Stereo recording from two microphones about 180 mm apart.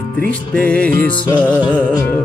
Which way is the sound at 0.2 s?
5° left (ahead or behind).